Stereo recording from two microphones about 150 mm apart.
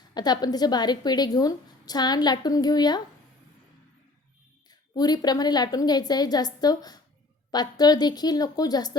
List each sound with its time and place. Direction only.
0.1 s a woman's voice: 25° left (ahead or behind)
4.7 s a woman's voice: 25° left (ahead or behind)